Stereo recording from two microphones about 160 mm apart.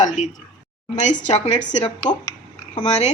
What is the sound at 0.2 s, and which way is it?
A woman's voice, 45° left (ahead or behind).